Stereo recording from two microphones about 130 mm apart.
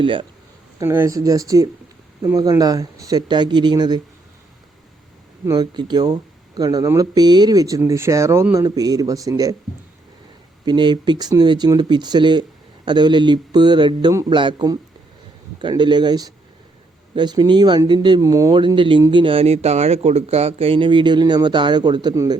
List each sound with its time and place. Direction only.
0.0 s speech: 40° right (ahead or behind)
0.8 s speech: 20° right (ahead or behind)
5.5 s speech: 35° right (ahead or behind)
10.7 s speech: 35° right (ahead or behind)
18.5 s speech: 40° right (ahead or behind)